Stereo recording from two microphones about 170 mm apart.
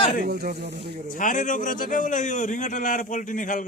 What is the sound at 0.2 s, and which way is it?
Speech, 65° right (ahead or behind).